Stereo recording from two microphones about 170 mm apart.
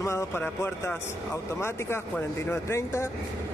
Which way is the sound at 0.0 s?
15° left (ahead or behind).